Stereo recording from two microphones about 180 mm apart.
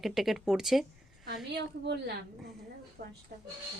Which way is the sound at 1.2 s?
65° right (ahead or behind).